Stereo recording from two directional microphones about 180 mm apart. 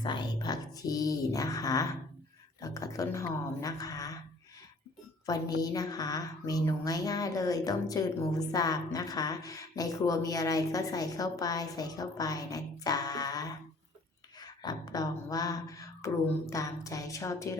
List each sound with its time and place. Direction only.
0.0 s a woman's voice: 25° left (ahead or behind)
5.2 s a woman's voice: 20° left (ahead or behind)
14.6 s a sound: 20° left (ahead or behind)